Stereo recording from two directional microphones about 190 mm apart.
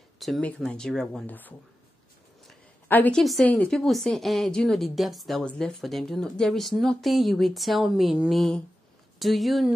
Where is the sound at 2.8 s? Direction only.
10° left (ahead or behind).